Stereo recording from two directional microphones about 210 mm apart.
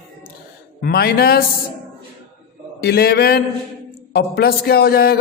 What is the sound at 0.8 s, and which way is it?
Speech, 45° left (ahead or behind).